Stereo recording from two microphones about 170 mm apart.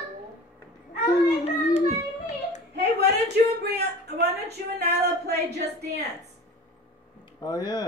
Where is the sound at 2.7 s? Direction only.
80° right.